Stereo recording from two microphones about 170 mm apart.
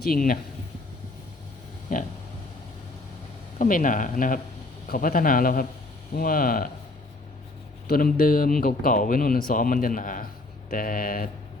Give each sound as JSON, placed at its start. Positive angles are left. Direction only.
{"t": 0.0, "sound": "speech", "side_deg": 60}
{"t": 1.9, "sound": "a sound", "side_deg": 55}
{"t": 3.6, "sound": "speech", "side_deg": 50}
{"t": 7.9, "sound": "speech", "side_deg": 65}